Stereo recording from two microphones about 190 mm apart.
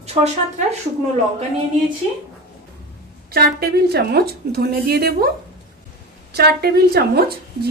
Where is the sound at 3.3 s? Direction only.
55° right (ahead or behind).